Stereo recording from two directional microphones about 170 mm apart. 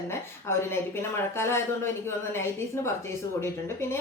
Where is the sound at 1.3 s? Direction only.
15° left (ahead or behind).